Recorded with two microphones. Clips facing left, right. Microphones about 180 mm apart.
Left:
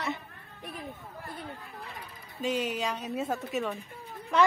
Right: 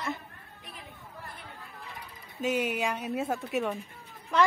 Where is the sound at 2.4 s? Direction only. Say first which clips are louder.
Right 1 dB; 10° right (ahead or behind).